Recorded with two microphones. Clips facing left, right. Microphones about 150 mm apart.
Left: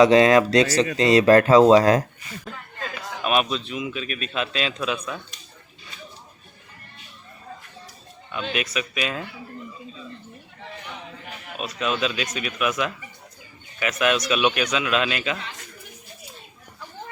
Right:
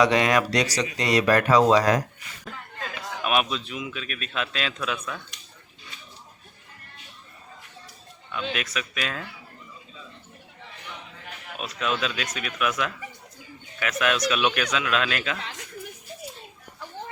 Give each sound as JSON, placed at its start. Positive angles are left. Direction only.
{"t": 0.0, "sound": "speech", "side_deg": 25}
{"t": 2.4, "sound": "a man's voice", "side_deg": 0}
{"t": 8.3, "sound": "a man's voice", "side_deg": 5}
{"t": 11.5, "sound": "a man's voice", "side_deg": 5}